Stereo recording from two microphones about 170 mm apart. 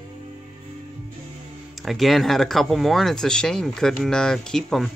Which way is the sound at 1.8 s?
Centre (ahead or behind).